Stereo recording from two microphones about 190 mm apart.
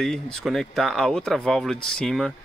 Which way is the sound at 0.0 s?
5° left (ahead or behind).